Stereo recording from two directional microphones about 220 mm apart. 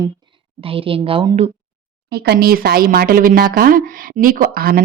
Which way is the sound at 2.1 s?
45° right (ahead or behind).